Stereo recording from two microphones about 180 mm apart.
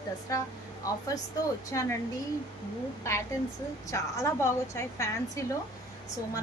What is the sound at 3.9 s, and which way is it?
A woman's voice, 15° left (ahead or behind).